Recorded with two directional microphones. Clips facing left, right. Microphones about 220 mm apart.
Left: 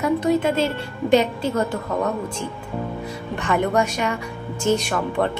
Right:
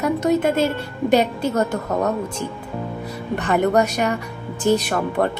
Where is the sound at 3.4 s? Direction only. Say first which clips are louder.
Right 3 dB; 40° right (ahead or behind).